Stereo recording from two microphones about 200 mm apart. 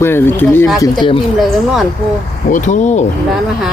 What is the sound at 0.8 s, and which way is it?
Speech, 25° left (ahead or behind).